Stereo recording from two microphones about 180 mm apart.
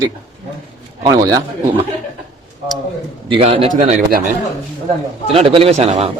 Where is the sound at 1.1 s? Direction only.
20° right (ahead or behind).